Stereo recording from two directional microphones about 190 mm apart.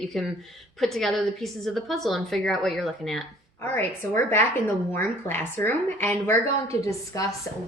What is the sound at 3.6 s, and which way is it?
A woman's voice, 10° left (ahead or behind).